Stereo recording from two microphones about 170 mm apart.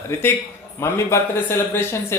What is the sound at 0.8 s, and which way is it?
Speech, 15° left (ahead or behind).